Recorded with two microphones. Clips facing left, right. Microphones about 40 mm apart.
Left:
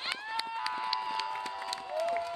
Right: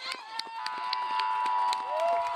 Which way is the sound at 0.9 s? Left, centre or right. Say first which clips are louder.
Right 4 dB; centre.